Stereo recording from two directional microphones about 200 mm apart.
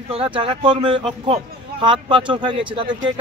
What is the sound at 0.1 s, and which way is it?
Speech, 25° right (ahead or behind).